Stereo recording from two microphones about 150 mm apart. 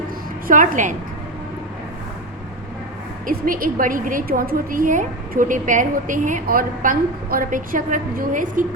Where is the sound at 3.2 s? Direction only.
70° right (ahead or behind).